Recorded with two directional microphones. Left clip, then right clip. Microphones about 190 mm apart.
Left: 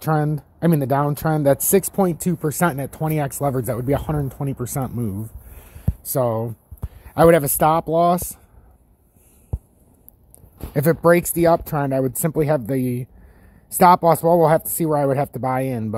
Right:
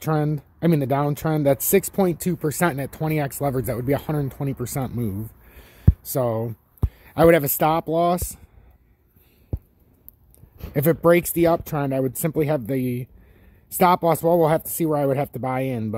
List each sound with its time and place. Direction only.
0.0 s speech: 15° right (ahead or behind)
10.7 s speech: 15° right (ahead or behind)